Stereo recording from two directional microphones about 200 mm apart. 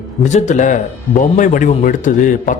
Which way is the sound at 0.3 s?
35° left (ahead or behind).